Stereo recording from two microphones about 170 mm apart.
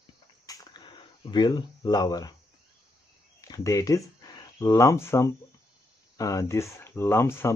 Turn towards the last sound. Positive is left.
turn(degrees=15)  # may be behind; listen again after turning